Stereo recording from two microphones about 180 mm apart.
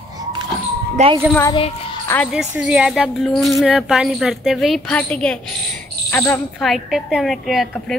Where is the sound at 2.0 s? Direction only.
10° left (ahead or behind).